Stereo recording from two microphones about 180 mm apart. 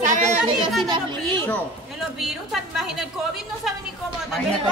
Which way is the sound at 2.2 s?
Centre (ahead or behind).